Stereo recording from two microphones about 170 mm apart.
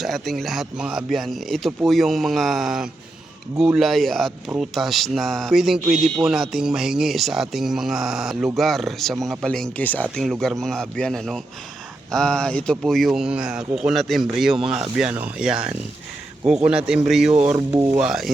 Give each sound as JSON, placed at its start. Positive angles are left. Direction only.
{"t": 0.0, "sound": "speech", "side_deg": 0}
{"t": 17.5, "sound": "speech", "side_deg": -20}
{"t": 18.0, "sound": "speech", "side_deg": -5}